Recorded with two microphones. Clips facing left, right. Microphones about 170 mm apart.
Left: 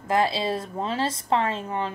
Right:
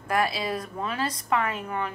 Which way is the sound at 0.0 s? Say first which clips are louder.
Left 3 dB; 25° left (ahead or behind).